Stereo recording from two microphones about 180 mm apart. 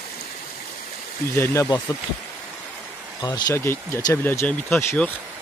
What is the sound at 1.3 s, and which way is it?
Speech, 15° left (ahead or behind).